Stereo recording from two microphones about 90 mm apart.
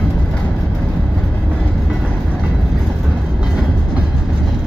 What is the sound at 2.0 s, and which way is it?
Train, 15° right (ahead or behind).